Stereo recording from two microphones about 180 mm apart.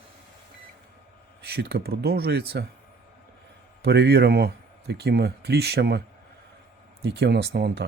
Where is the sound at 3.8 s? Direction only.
65° right (ahead or behind).